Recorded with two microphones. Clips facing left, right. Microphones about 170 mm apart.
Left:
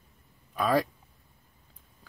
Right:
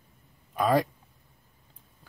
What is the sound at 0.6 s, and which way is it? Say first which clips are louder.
Speech: right 2 dB; 20° right (ahead or behind).